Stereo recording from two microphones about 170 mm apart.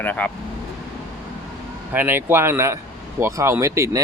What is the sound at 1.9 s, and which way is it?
Speech, 10° right (ahead or behind).